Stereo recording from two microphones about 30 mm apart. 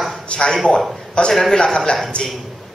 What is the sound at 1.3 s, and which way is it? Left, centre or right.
Speech, centre.